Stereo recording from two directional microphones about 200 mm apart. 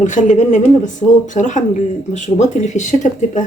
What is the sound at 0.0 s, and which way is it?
Speech, 35° left (ahead or behind).